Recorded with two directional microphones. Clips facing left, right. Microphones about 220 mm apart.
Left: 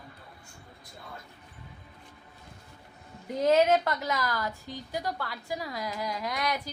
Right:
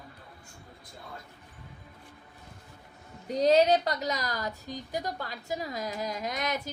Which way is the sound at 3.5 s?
35° right (ahead or behind).